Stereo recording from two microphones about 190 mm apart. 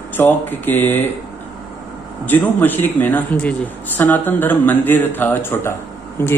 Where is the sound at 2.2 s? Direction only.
10° left (ahead or behind).